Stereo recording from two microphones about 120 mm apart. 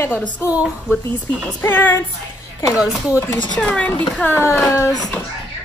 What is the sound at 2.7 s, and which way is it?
Speech, 5° right (ahead or behind).